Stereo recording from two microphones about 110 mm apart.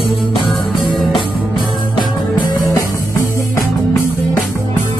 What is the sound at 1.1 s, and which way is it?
Music, 45° left (ahead or behind).